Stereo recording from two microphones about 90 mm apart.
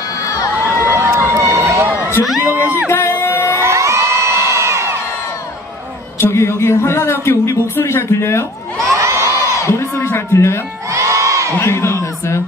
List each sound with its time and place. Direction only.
0.2 s crowd: 35° left (ahead or behind)
0.8 s run: 30° right (ahead or behind)
2.4 s music: 20° right (ahead or behind)
2.9 s music: 25° left (ahead or behind)
3.6 s crowd: 35° right (ahead or behind)
6.3 s a sound: 30° left (ahead or behind)
8.9 s crowd: 35° right (ahead or behind)
9.6 s speech: 30° left (ahead or behind)
10.9 s crowd: 35° right (ahead or behind)
11.5 s speech: 25° left (ahead or behind)